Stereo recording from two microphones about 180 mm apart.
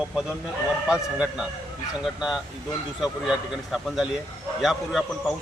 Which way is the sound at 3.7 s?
Centre (ahead or behind).